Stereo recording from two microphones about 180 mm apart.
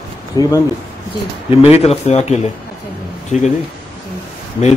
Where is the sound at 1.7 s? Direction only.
35° left (ahead or behind).